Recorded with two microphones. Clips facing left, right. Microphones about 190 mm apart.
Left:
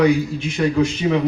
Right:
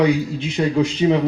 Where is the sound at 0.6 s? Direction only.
25° right (ahead or behind).